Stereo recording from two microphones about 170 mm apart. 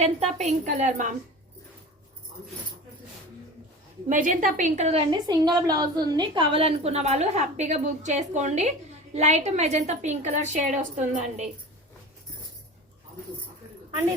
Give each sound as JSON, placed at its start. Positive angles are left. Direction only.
{"t": 0.0, "sound": "a woman's voice", "side_deg": -40}
{"t": 4.1, "sound": "a woman's voice", "side_deg": -50}
{"t": 5.1, "sound": "a woman's voice", "side_deg": -25}